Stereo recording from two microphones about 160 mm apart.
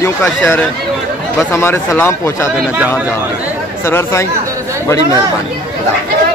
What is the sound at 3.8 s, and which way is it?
Speech, 15° left (ahead or behind).